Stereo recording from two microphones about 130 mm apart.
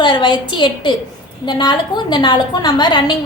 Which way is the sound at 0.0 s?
40° left (ahead or behind).